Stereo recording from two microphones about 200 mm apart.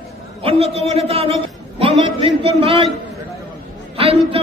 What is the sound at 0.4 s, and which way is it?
A man's voice, 30° right (ahead or behind).